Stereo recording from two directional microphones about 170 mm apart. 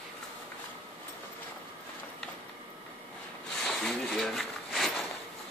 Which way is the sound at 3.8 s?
Centre (ahead or behind).